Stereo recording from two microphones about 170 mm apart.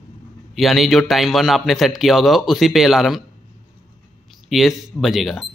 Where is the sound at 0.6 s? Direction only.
Centre (ahead or behind).